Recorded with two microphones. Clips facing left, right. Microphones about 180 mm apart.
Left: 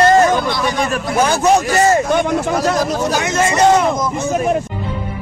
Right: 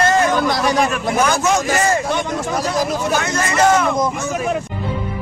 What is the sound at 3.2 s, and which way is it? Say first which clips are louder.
Speech: left 5 dB; 25° left (ahead or behind).